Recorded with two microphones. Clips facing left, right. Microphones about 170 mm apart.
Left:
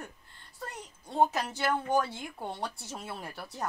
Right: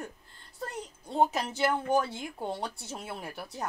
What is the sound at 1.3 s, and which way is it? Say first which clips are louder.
Speech: right 2 dB; 20° right (ahead or behind).